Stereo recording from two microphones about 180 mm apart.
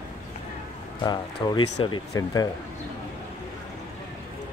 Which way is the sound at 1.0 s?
25° left (ahead or behind).